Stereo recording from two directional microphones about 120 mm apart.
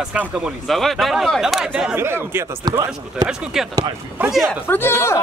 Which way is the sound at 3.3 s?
5° right (ahead or behind).